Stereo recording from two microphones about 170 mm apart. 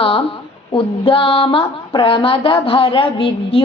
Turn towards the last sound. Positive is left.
turn(degrees=30)  # may be behind; listen again after turning